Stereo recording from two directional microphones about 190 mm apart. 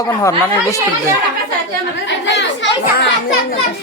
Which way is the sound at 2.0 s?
70° left (ahead or behind).